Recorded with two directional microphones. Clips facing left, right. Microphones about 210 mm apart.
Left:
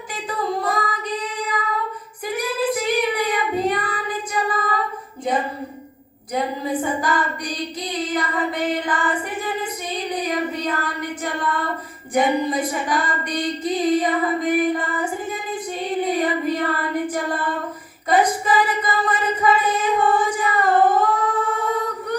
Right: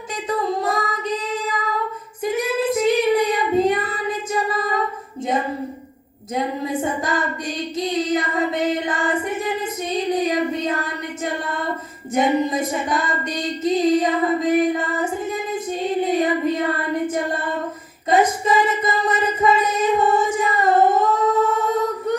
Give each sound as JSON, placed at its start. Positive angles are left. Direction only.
{"t": 0.3, "sound": "female singing", "side_deg": -25}
{"t": 2.2, "sound": "child singing", "side_deg": -25}
{"t": 4.3, "sound": "singing", "side_deg": -25}
{"t": 6.8, "sound": "female singing", "side_deg": -25}
{"t": 9.9, "sound": "music", "side_deg": -25}
{"t": 12.1, "sound": "a sound", "side_deg": -25}
{"t": 18.1, "sound": "singing", "side_deg": -25}